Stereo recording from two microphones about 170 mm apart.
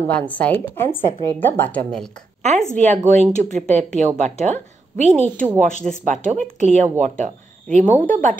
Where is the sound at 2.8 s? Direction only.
40° right (ahead or behind).